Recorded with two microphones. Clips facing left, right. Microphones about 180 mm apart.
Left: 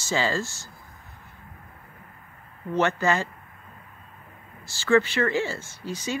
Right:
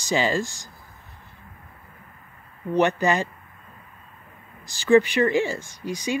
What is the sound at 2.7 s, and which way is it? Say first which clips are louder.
Speech: right 3 dB; 15° right (ahead or behind).